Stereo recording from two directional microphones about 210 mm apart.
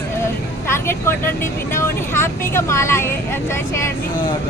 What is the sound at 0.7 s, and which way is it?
Speech, 10° left (ahead or behind).